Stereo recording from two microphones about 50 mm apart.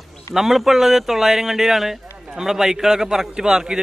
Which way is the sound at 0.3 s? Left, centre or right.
Centre.